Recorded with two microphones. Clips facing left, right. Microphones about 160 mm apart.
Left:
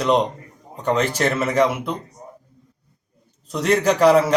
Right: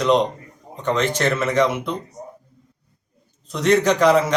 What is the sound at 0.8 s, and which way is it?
Speech, 10° left (ahead or behind).